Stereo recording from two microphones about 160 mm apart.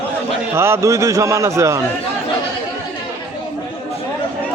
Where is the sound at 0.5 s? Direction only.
15° right (ahead or behind).